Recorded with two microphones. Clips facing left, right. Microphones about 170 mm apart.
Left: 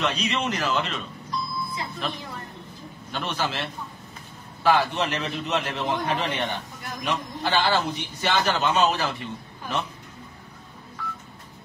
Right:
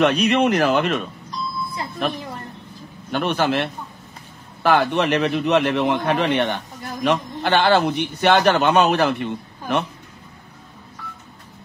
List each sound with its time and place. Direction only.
0.0 s a man's voice: 60° right (ahead or behind)
1.8 s music: 50° right (ahead or behind)
3.1 s a man's voice: 60° right (ahead or behind)